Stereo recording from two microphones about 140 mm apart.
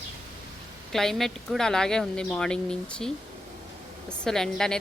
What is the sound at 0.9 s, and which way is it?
A woman's voice, centre (ahead or behind).